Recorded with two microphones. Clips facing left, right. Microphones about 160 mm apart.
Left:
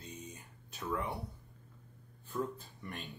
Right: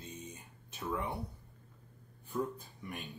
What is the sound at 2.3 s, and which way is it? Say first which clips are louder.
Speech: right 1 dB; 15° right (ahead or behind).